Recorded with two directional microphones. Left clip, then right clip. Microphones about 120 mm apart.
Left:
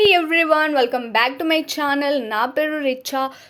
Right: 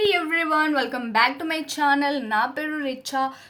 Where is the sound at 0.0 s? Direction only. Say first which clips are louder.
Left 6 dB; 45° left (ahead or behind).